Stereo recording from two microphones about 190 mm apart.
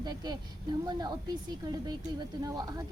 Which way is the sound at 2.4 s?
20° right (ahead or behind).